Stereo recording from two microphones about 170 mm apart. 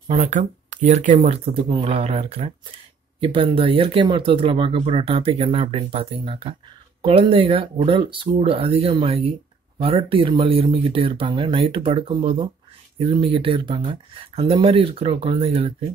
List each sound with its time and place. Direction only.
0.1 s speech: 45° right (ahead or behind)